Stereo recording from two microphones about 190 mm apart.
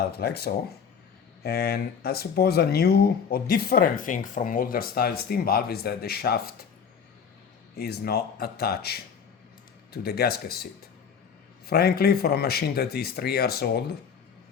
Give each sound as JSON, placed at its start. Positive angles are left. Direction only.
{"t": 0.1, "sound": "speech", "side_deg": 55}
{"t": 7.8, "sound": "speech", "side_deg": 55}